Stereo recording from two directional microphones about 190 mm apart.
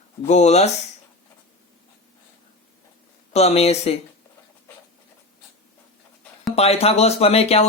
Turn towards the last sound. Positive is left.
turn(degrees=30)  # may be behind; listen again after turning